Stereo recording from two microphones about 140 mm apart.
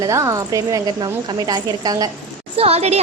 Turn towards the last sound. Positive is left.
turn(degrees=-50)  # may be behind; listen again after turning